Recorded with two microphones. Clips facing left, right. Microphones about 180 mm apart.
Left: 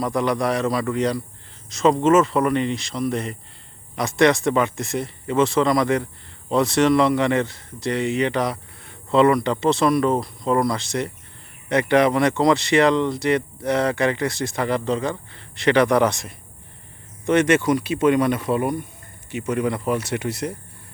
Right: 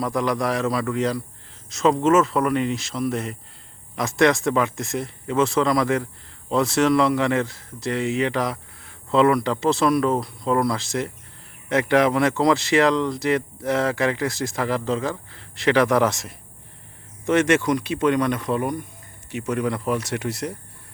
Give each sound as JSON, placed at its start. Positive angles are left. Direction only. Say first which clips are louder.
{"t": 0.0, "sound": "speech", "louder": "left 1 dB", "side_deg": 0}